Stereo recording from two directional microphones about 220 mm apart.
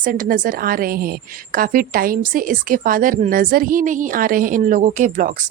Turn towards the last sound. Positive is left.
turn(degrees=-35)  # may be behind; listen again after turning